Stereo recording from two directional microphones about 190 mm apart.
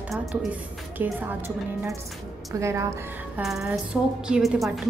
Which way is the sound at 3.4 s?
Centre (ahead or behind).